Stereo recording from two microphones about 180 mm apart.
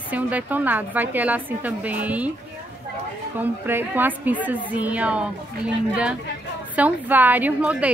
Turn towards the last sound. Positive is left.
turn(degrees=-5)  # may be behind; listen again after turning